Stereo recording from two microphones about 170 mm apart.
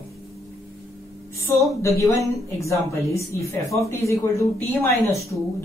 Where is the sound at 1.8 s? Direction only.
20° left (ahead or behind).